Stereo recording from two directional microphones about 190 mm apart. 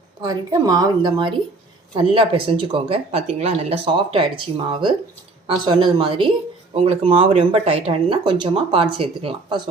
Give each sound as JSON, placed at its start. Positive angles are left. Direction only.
{"t": 0.2, "sound": "speech", "side_deg": -20}